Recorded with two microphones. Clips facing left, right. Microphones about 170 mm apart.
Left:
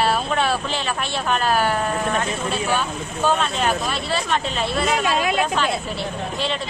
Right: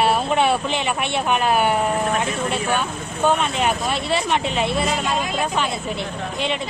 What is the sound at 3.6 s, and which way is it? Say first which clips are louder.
Speech: right 1 dB; 20° right (ahead or behind).